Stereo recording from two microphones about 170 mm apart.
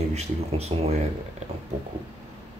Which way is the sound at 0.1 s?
40° right (ahead or behind).